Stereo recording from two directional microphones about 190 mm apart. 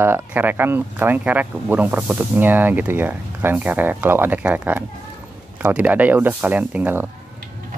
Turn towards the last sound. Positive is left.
turn(degrees=-10)  # may be behind; listen again after turning